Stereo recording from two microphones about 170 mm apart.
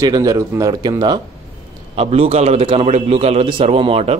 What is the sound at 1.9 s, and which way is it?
A man's voice, 35° right (ahead or behind).